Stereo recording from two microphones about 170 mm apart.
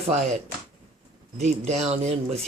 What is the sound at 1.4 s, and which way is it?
Speech, 40° right (ahead or behind).